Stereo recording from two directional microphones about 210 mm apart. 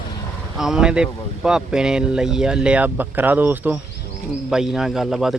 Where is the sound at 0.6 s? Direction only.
5° right (ahead or behind).